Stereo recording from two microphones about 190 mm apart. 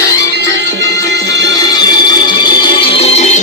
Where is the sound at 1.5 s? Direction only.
20° left (ahead or behind); by 3.4 s 35° left (ahead or behind).